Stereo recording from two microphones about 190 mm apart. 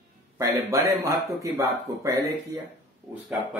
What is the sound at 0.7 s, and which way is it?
Speech, 15° right (ahead or behind).